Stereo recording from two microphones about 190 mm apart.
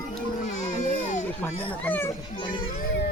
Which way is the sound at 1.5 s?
30° left (ahead or behind).